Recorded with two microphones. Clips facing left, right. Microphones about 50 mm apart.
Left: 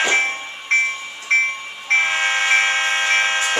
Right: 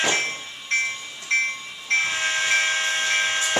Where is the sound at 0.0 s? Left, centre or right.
Left.